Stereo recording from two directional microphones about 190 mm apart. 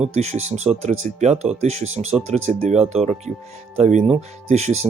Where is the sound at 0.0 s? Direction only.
35° right (ahead or behind).